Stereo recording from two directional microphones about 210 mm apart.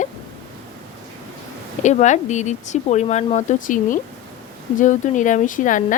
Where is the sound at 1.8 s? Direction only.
35° left (ahead or behind).